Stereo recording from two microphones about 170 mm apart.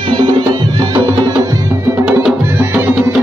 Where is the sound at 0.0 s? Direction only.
25° right (ahead or behind).